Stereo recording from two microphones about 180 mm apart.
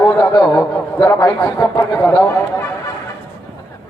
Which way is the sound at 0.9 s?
20° left (ahead or behind).